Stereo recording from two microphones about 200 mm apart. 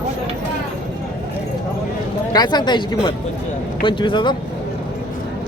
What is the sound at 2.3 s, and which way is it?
Speech, 20° left (ahead or behind).